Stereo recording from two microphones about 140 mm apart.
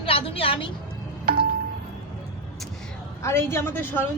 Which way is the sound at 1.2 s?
90° right.